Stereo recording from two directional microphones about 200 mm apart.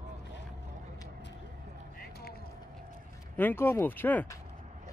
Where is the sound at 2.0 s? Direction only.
50° left (ahead or behind).